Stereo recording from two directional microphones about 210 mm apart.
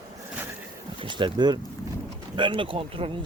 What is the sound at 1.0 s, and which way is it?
Speech, 25° right (ahead or behind).